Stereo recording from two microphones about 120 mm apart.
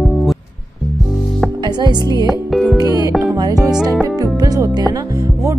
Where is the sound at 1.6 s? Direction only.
35° right (ahead or behind).